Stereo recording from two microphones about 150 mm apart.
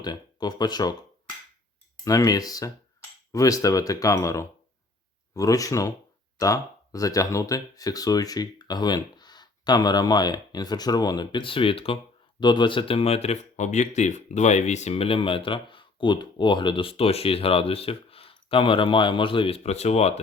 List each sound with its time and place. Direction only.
0.0 s speech: 25° left (ahead or behind)
2.0 s speech: 25° left (ahead or behind); by 20.1 s 45° left (ahead or behind)